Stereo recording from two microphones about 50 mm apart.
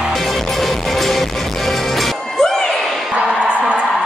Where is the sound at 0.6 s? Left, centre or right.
Centre.